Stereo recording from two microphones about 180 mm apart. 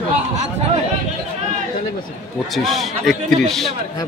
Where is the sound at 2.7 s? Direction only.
Centre (ahead or behind).